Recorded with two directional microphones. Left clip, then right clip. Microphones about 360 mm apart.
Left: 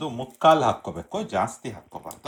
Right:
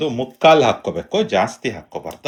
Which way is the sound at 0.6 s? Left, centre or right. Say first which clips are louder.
Right 7 dB; centre.